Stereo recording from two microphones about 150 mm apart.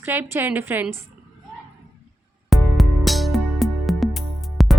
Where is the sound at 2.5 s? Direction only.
Centre (ahead or behind).